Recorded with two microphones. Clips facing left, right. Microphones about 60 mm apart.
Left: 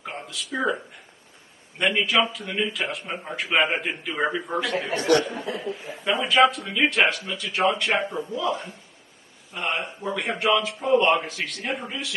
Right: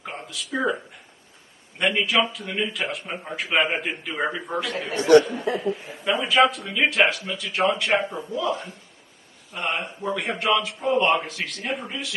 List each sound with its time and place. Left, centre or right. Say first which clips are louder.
0.0 s a man's voice: even; centre
4.9 s speech: right 6 dB; right
5.8 s a man's voice: even; centre